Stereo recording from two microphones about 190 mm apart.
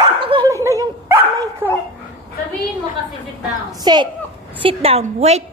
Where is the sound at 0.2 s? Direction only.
25° right (ahead or behind).